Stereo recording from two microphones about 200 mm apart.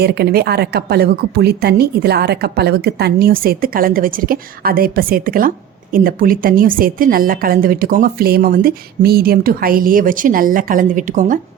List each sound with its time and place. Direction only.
0.0 s a woman's voice: 55° right (ahead or behind)